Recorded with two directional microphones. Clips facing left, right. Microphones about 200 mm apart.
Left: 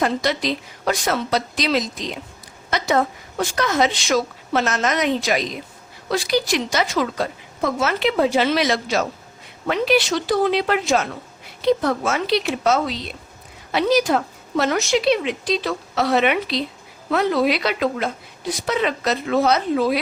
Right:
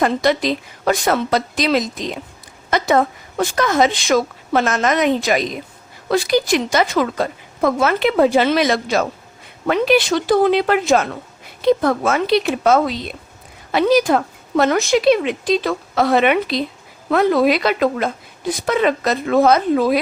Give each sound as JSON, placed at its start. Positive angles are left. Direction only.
{"t": 0.0, "sound": "a woman's voice", "side_deg": -50}